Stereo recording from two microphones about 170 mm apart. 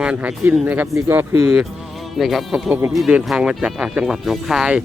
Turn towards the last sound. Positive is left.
turn(degrees=-5)  # may be behind; listen again after turning